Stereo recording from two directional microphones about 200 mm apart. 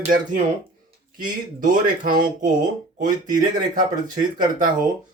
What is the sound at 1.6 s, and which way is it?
Speech, 40° right (ahead or behind).